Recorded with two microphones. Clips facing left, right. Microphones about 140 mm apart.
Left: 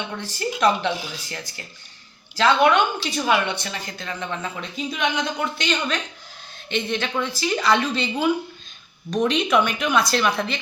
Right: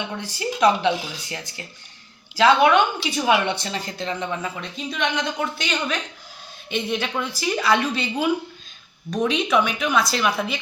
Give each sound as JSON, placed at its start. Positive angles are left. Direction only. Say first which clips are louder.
{"t": 0.2, "sound": "a woman's voice", "louder": "right 1 dB", "side_deg": -15}
{"t": 4.2, "sound": "a woman's voice", "louder": "right 2 dB", "side_deg": -10}
{"t": 4.6, "sound": "a woman's voice", "louder": "left 1 dB", "side_deg": 5}